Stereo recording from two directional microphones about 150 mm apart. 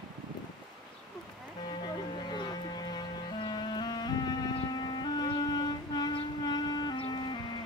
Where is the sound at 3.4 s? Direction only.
30° left (ahead or behind).